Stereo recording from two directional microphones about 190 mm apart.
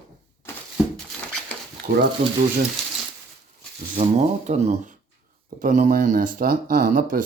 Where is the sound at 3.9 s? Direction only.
35° right (ahead or behind).